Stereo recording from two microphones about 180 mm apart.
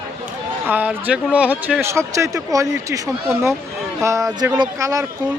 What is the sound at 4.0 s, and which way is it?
Speech, 15° right (ahead or behind).